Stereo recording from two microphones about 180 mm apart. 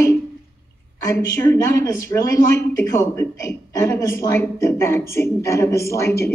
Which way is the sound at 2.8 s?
15° left (ahead or behind).